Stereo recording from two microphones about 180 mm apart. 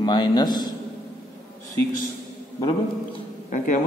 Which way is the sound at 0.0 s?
25° left (ahead or behind).